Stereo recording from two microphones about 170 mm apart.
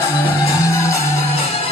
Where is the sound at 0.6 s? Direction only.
15° left (ahead or behind).